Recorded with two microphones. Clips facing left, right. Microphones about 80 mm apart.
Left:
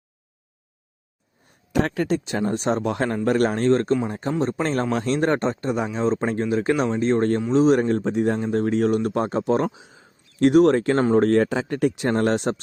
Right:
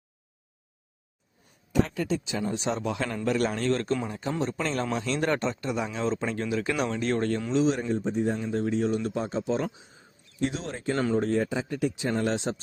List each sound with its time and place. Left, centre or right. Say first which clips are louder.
1.7 s speech: left 5 dB; left
7.5 s speech: left 8 dB; left
7.8 s speech: left 6 dB; left
9.7 s speech: left 5 dB; left
10.4 s speech: left 15 dB; left